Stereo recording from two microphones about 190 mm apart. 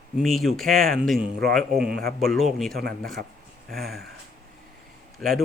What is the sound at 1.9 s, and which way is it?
Speech, 55° right (ahead or behind).